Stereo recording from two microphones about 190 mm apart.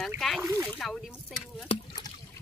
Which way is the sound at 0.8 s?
Centre (ahead or behind).